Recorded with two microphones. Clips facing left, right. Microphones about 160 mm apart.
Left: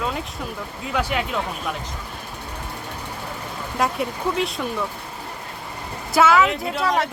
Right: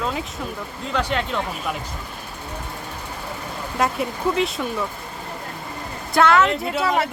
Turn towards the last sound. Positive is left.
turn(degrees=0)  # may be behind; listen again after turning